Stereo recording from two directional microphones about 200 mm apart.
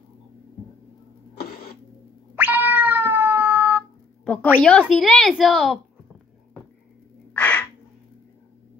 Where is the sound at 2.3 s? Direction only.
10° right (ahead or behind).